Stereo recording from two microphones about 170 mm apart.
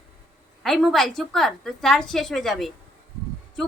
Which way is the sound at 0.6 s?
Centre (ahead or behind).